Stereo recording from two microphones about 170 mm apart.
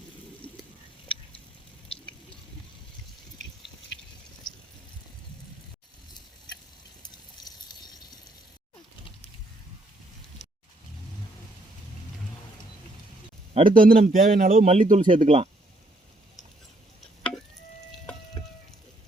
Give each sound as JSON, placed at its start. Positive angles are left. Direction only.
{"t": 0.4, "sound": "a sound", "side_deg": 10}
{"t": 1.9, "sound": "drip", "side_deg": 35}
{"t": 10.4, "sound": "vehicle", "side_deg": 40}
{"t": 13.5, "sound": "a man's voice", "side_deg": -45}
{"t": 14.7, "sound": "a man's voice", "side_deg": -45}